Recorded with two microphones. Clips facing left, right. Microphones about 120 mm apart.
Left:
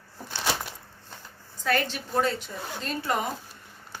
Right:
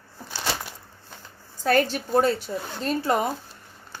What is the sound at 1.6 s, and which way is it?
Speech, 40° right (ahead or behind).